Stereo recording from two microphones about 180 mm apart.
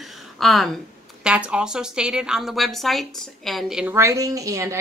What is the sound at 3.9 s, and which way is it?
Speech, 15° right (ahead or behind).